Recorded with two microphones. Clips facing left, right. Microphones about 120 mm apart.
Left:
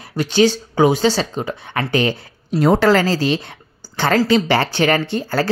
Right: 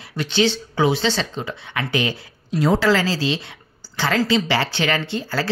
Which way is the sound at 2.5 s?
55° left (ahead or behind).